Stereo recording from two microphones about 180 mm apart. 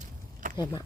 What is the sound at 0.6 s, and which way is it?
Speech, 20° left (ahead or behind).